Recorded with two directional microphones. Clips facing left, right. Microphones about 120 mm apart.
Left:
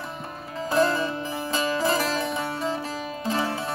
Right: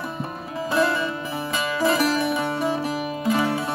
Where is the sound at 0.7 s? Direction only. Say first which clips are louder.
Even; 35° left (ahead or behind).